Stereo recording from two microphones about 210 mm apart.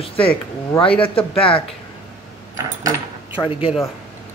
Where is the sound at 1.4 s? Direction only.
25° left (ahead or behind).